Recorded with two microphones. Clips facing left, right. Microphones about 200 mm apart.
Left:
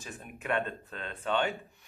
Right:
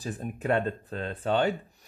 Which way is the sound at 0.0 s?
35° right (ahead or behind).